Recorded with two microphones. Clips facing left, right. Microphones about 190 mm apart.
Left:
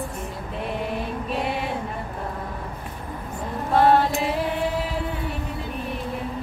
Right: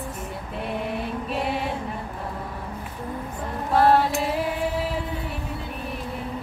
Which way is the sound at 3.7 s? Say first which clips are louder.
Left 1 dB; centre (ahead or behind).